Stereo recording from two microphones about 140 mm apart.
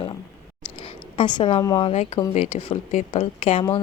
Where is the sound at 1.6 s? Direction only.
25° left (ahead or behind).